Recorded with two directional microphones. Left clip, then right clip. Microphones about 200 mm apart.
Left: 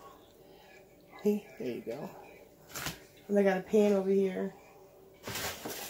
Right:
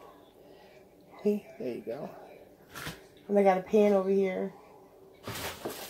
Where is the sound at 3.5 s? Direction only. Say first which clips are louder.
Right 3 dB; 10° left (ahead or behind).